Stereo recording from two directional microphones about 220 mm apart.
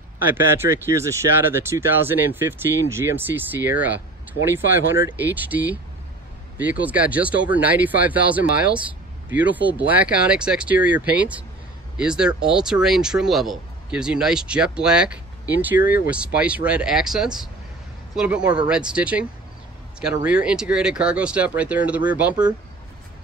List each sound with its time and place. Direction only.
0.2 s speech: 10° right (ahead or behind)
20.2 s speech: 5° right (ahead or behind)